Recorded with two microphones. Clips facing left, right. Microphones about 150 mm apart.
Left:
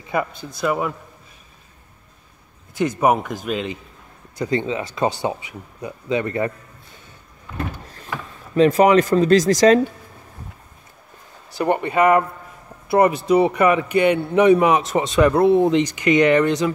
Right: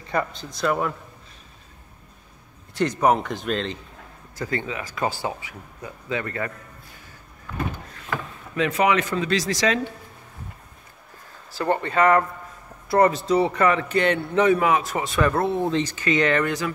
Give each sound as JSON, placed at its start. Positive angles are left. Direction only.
{"t": 0.3, "sound": "speech", "side_deg": 55}
{"t": 0.6, "sound": "a man's voice", "side_deg": 5}
{"t": 3.0, "sound": "a man's voice", "side_deg": 10}
{"t": 4.4, "sound": "speech", "side_deg": 20}
{"t": 8.5, "sound": "speech", "side_deg": 40}
{"t": 11.5, "sound": "a man's voice", "side_deg": 15}